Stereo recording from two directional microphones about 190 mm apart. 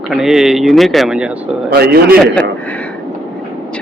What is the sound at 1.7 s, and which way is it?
Speech, 55° right (ahead or behind).